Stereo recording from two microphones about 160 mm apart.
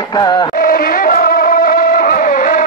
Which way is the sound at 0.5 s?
60° left (ahead or behind).